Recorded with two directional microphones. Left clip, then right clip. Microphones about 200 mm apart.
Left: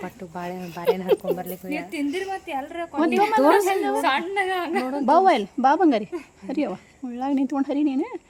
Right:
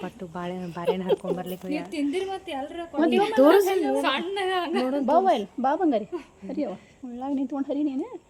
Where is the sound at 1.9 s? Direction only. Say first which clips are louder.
Left 1 dB; 10° left (ahead or behind).